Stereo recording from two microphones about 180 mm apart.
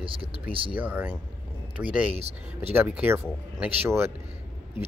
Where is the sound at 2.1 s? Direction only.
35° right (ahead or behind).